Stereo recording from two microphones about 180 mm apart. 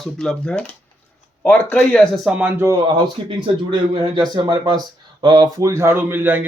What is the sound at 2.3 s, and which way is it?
A man's voice, 10° right (ahead or behind).